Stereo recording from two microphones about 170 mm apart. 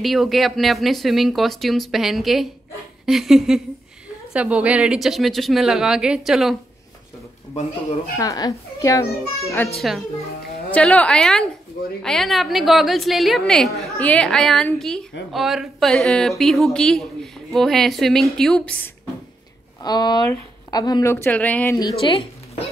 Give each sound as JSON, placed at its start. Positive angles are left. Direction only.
{"t": 0.0, "sound": "a woman's voice", "side_deg": 0}
{"t": 8.2, "sound": "a child's voice", "side_deg": 20}
{"t": 9.8, "sound": "a woman's voice", "side_deg": 0}
{"t": 19.8, "sound": "a child's voice", "side_deg": 25}
{"t": 21.7, "sound": "a child's voice", "side_deg": 25}